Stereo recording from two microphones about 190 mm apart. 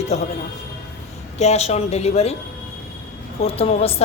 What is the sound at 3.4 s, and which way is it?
Speech, 30° left (ahead or behind).